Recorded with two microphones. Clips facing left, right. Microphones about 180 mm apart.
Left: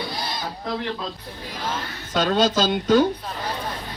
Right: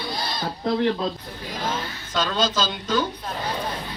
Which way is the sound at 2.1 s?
60° left (ahead or behind).